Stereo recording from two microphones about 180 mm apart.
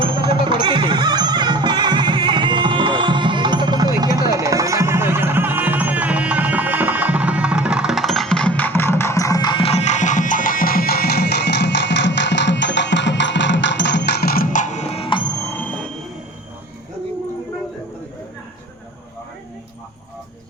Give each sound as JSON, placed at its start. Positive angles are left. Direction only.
{"t": 0.0, "sound": "music", "side_deg": -25}
{"t": 15.4, "sound": "music", "side_deg": 10}